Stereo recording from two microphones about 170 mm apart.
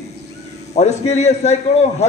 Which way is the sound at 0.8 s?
40° left (ahead or behind).